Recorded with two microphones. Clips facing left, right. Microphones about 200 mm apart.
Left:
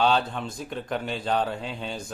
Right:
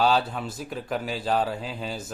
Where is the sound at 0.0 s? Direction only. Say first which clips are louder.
Even; 5° right (ahead or behind).